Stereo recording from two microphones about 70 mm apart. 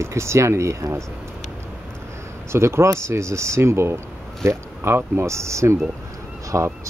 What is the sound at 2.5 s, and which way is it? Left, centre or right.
Speech, right.